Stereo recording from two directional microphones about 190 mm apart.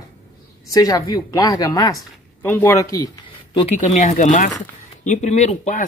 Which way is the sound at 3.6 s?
35° left (ahead or behind).